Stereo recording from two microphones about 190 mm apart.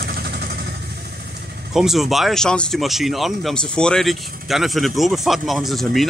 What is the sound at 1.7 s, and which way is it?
Speech, centre (ahead or behind).